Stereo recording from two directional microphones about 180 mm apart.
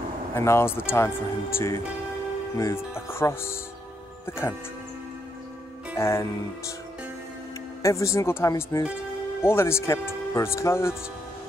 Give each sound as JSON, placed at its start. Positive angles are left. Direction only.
{"t": 0.3, "sound": "speech", "side_deg": 15}
{"t": 5.9, "sound": "speech", "side_deg": 15}
{"t": 7.8, "sound": "speech", "side_deg": 15}